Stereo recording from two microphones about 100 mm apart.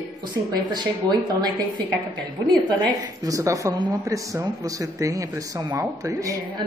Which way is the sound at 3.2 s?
35° right (ahead or behind).